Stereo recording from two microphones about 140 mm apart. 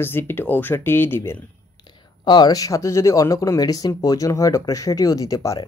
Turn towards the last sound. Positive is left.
turn(degrees=25)  # may be behind; listen again after turning